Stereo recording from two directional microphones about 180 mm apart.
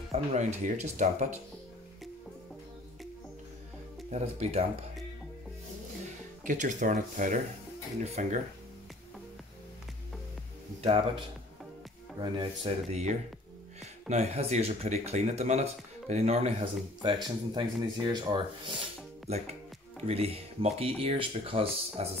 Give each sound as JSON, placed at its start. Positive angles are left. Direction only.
{"t": 0.1, "sound": "speech", "side_deg": -40}
{"t": 4.1, "sound": "speech", "side_deg": -35}
{"t": 6.4, "sound": "speech", "side_deg": -45}
{"t": 12.2, "sound": "speech", "side_deg": -30}
{"t": 17.0, "sound": "speech", "side_deg": -25}